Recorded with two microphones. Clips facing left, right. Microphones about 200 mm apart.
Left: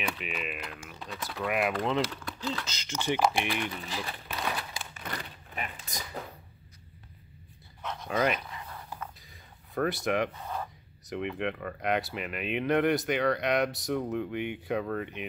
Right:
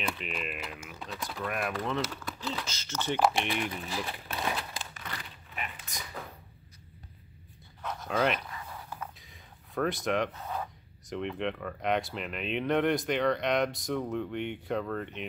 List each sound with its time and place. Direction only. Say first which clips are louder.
0.0 s speech: even; 5° left (ahead or behind)
2.0 s speech: left 2 dB; 5° right (ahead or behind)
2.7 s speech: even; 15° left (ahead or behind)
3.2 s speech: right 2 dB; centre (ahead or behind)
5.1 s a sound: left 4 dB; 40° left (ahead or behind)
7.8 s dog: even; 5° right (ahead or behind)
8.6 s speech: even; 5° right (ahead or behind)